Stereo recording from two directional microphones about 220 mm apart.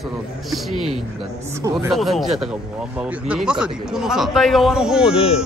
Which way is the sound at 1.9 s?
Centre (ahead or behind).